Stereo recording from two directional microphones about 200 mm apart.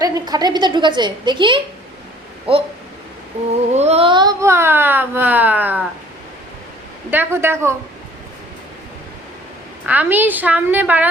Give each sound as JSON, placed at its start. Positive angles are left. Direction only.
{"t": 0.0, "sound": "a woman's voice", "side_deg": -20}
{"t": 3.7, "sound": "speech", "side_deg": -35}
{"t": 7.1, "sound": "speech", "side_deg": -10}
{"t": 9.8, "sound": "speech", "side_deg": -10}